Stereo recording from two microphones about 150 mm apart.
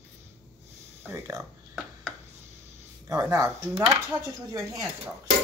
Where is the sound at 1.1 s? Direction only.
20° right (ahead or behind).